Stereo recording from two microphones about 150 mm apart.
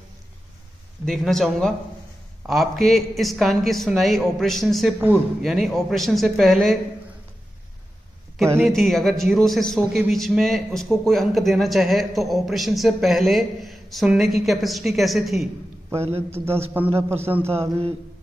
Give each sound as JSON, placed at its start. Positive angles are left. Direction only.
{"t": 1.0, "sound": "a man's voice", "side_deg": 0}
{"t": 8.6, "sound": "a man's voice", "side_deg": 0}
{"t": 16.3, "sound": "a man's voice", "side_deg": -15}